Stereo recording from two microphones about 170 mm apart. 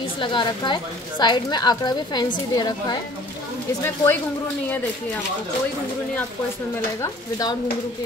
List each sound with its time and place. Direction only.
0.2 s a woman's voice: 30° left (ahead or behind)
3.8 s speech: 15° left (ahead or behind)
7.0 s a woman's voice: 20° left (ahead or behind)